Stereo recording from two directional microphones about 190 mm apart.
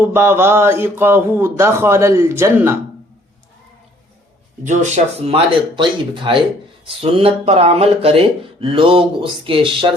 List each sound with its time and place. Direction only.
0.0 s speech: 10° right (ahead or behind)
4.6 s speech: 40° right (ahead or behind)